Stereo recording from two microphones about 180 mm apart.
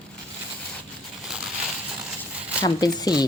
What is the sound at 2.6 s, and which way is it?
Speech, 20° left (ahead or behind).